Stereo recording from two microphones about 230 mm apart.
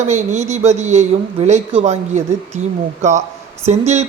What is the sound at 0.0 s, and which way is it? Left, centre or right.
A woman's voice, right.